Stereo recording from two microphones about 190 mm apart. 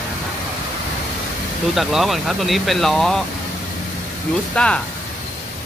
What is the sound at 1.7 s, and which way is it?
Speech, centre (ahead or behind).